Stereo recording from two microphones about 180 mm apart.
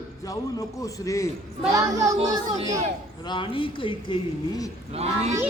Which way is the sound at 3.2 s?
25° left (ahead or behind).